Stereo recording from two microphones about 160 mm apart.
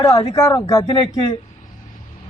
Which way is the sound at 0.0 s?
20° left (ahead or behind).